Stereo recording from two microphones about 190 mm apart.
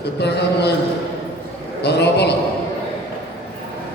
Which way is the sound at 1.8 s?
60° left (ahead or behind).